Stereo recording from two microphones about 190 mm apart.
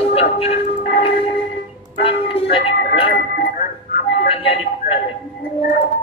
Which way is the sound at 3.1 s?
55° left (ahead or behind).